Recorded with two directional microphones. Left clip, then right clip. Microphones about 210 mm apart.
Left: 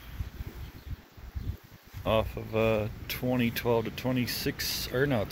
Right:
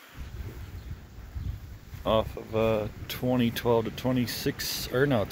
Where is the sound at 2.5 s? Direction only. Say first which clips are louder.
Right 1 dB; 5° left (ahead or behind).